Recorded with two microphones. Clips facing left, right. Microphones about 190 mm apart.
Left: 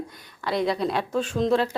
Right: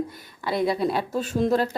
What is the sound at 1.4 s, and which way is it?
Speech, 60° right (ahead or behind).